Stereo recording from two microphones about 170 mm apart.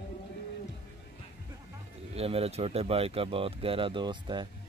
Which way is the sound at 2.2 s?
35° right (ahead or behind).